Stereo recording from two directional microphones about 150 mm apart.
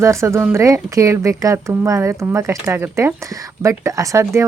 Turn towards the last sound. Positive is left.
turn(degrees=-15)  # may be behind; listen again after turning